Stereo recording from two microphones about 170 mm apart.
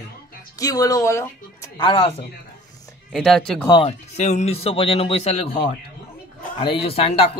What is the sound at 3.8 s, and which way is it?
A man's voice, 40° left (ahead or behind).